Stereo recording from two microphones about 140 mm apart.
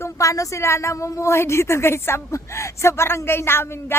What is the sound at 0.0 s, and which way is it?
A woman's voice, 20° left (ahead or behind).